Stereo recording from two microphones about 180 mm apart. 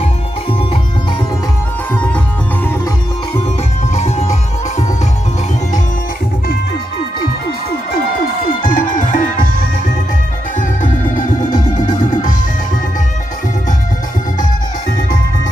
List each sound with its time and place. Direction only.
2.0 s music: 5° left (ahead or behind)
3.9 s music: 35° left (ahead or behind)
8.7 s music: 45° left (ahead or behind)